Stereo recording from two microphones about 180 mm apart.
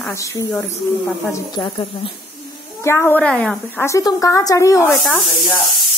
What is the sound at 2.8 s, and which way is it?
A woman's voice, 15° left (ahead or behind).